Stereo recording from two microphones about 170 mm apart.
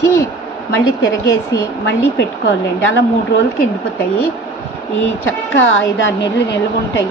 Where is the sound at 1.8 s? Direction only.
90° left.